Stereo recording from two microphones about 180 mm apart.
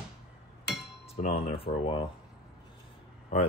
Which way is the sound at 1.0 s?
35° left (ahead or behind).